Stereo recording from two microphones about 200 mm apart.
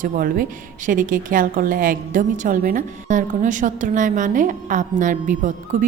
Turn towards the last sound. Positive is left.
turn(degrees=-40)  # may be behind; listen again after turning